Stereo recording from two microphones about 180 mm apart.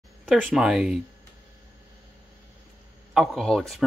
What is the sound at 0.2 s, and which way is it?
Speech, centre (ahead or behind).